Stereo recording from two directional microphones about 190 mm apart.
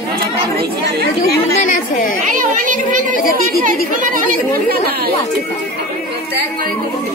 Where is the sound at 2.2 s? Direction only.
45° right (ahead or behind).